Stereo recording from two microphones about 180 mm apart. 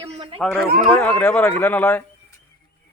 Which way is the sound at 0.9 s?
10° left (ahead or behind).